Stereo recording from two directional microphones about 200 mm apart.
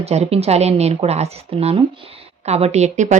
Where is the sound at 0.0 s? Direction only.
30° right (ahead or behind).